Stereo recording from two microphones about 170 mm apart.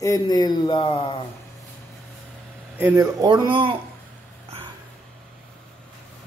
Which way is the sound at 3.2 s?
25° right (ahead or behind).